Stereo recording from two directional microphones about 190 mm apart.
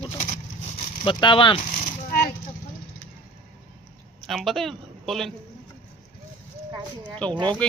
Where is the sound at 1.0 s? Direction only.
25° left (ahead or behind).